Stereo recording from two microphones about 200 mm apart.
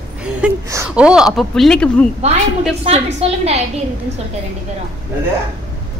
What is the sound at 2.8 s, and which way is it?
Speech, 30° right (ahead or behind).